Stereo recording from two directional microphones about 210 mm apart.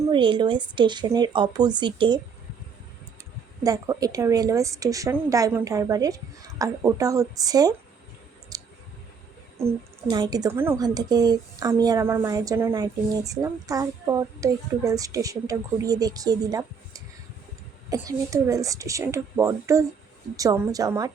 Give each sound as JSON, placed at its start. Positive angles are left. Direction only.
{"t": 0.1, "sound": "a woman's voice", "side_deg": -25}
{"t": 3.6, "sound": "a child's voice", "side_deg": -15}
{"t": 8.5, "sound": "clicking", "side_deg": -15}
{"t": 9.6, "sound": "a child's voice", "side_deg": -20}